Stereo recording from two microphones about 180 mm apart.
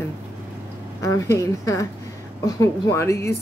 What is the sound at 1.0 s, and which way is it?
A woman's voice, 15° left (ahead or behind).